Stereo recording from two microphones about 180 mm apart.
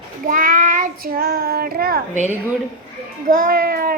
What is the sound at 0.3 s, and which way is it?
Child singing, 45° right (ahead or behind).